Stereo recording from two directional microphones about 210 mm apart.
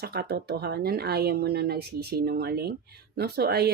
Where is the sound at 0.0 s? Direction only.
50° right (ahead or behind).